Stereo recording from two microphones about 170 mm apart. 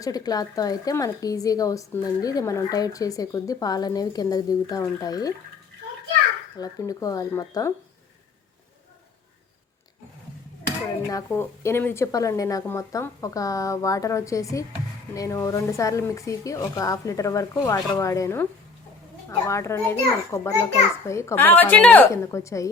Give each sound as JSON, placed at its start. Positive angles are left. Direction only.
{"t": 0.0, "sound": "speech", "side_deg": 20}
{"t": 6.6, "sound": "speech", "side_deg": 20}
{"t": 11.1, "sound": "a woman's voice", "side_deg": 15}